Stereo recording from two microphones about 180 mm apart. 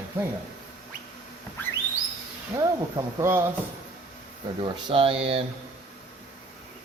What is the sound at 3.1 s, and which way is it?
Speech, 15° right (ahead or behind).